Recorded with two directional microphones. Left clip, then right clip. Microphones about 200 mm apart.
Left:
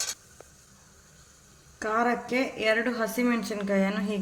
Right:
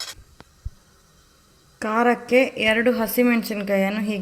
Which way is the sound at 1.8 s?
30° right (ahead or behind).